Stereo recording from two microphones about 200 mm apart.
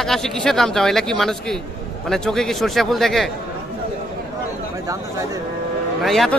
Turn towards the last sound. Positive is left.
turn(degrees=0)  # may be behind; listen again after turning